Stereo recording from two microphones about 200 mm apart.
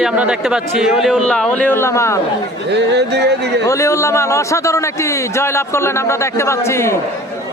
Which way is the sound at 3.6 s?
15° left (ahead or behind).